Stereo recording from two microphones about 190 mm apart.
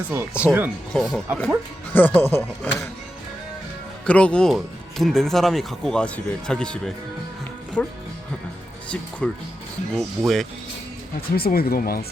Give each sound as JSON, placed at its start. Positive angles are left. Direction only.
{"t": 0.1, "sound": "speech", "side_deg": -10}
{"t": 1.9, "sound": "speech", "side_deg": 10}
{"t": 4.0, "sound": "speech", "side_deg": 5}
{"t": 9.2, "sound": "speech", "side_deg": 5}
{"t": 11.3, "sound": "speech", "side_deg": 50}